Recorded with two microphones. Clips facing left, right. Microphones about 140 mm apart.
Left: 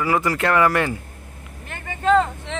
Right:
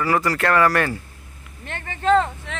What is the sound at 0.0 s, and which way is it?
Speech, 15° left (ahead or behind).